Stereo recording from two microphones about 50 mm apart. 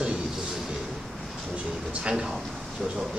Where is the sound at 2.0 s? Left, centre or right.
Centre.